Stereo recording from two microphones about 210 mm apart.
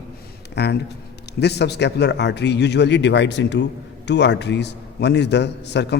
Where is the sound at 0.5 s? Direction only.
55° left (ahead or behind).